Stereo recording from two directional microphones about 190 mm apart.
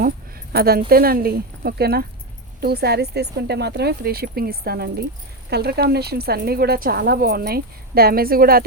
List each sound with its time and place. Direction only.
0.5 s speech: 55° right (ahead or behind)